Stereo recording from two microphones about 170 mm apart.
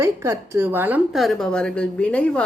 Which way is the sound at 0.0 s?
15° right (ahead or behind).